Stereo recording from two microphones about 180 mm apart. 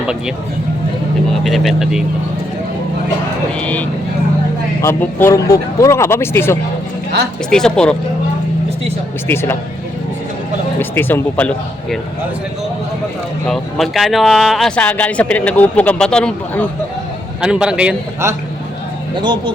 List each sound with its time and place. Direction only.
1.5 s speech: centre (ahead or behind)
3.6 s speech: 10° left (ahead or behind)
9.2 s speech: 15° left (ahead or behind)
10.8 s speech: 10° left (ahead or behind)
13.5 s speech: centre (ahead or behind)
19.1 s speech: 25° right (ahead or behind)